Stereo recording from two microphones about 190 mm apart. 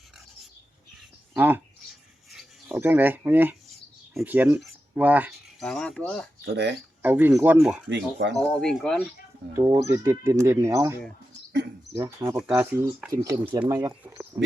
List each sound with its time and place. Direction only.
1.3 s speech: 10° right (ahead or behind)
2.3 s a sound: centre (ahead or behind)
2.7 s speech: 10° right (ahead or behind)
6.4 s speech: 65° right (ahead or behind)
7.0 s speech: 10° right (ahead or behind)
7.9 s speech: 65° right (ahead or behind)
8.4 s speech: 5° left (ahead or behind)
9.5 s speech: 15° right (ahead or behind)
11.9 s speech: 15° right (ahead or behind)